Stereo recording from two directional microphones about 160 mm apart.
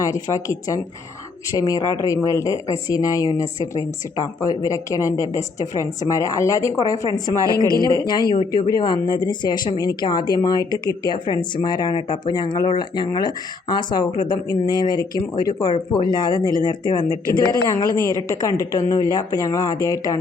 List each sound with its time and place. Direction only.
0.0 s speech: 20° left (ahead or behind)
7.3 s speech: 20° right (ahead or behind)
8.0 s speech: 25° left (ahead or behind)
16.3 s speech: 25° right (ahead or behind)
16.6 s speech: 30° left (ahead or behind)